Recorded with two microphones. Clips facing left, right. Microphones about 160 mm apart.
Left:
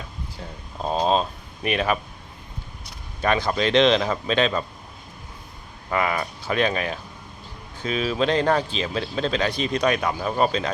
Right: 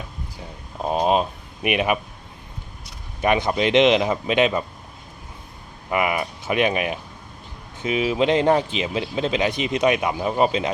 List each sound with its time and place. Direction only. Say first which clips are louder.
0.8 s speech: right 2 dB; 15° right (ahead or behind)
3.2 s speech: right 2 dB; 20° right (ahead or behind)
5.9 s speech: right 2 dB; 15° right (ahead or behind)